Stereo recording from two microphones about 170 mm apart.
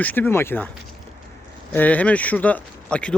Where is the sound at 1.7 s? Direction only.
10° left (ahead or behind).